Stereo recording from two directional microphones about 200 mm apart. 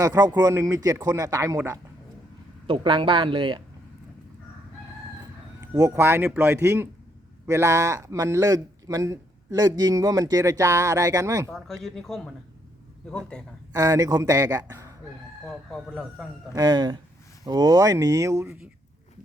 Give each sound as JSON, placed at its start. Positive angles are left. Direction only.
{"t": 0.0, "sound": "a man's voice", "side_deg": -20}
{"t": 2.6, "sound": "speech", "side_deg": -25}
{"t": 5.5, "sound": "a man's voice", "side_deg": -15}
{"t": 11.5, "sound": "speech", "side_deg": 0}
{"t": 13.7, "sound": "a man's voice", "side_deg": -15}
{"t": 15.4, "sound": "speech", "side_deg": 0}
{"t": 16.6, "sound": "a man's voice", "side_deg": -20}